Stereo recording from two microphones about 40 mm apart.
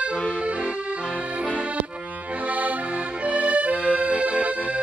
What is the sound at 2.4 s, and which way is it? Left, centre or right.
Accordion, right.